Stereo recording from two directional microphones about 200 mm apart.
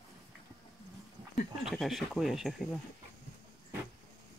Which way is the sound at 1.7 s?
Centre (ahead or behind).